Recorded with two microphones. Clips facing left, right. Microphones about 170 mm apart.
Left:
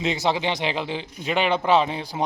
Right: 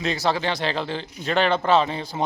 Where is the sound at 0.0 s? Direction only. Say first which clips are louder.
Even; 20° left (ahead or behind).